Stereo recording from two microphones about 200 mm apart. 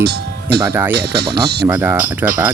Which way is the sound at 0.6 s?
10° right (ahead or behind).